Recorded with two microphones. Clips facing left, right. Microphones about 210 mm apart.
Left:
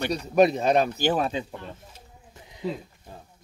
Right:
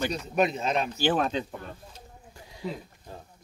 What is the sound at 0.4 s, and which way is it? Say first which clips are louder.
Speech: left 7 dB; 35° left (ahead or behind).